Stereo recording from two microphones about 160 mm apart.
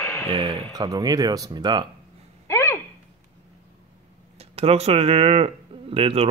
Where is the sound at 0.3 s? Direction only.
30° right (ahead or behind).